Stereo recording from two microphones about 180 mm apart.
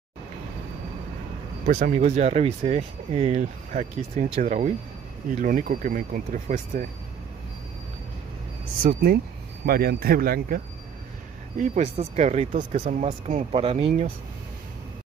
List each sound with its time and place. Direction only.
1.7 s speech: 40° right (ahead or behind)
8.8 s speech: 55° right (ahead or behind)
11.5 s speech: 45° right (ahead or behind)